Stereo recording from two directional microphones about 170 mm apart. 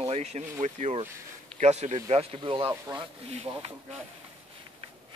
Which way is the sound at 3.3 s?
40° right (ahead or behind).